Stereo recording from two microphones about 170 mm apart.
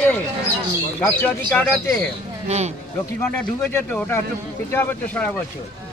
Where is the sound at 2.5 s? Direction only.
40° right (ahead or behind).